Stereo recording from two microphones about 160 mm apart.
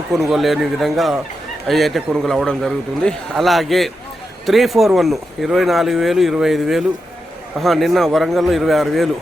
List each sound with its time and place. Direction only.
0.1 s speech: centre (ahead or behind)